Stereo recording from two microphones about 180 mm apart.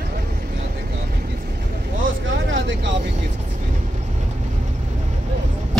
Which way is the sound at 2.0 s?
90° right.